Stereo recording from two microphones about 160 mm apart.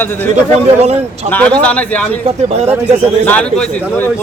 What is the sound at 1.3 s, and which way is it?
Speech, 10° left (ahead or behind).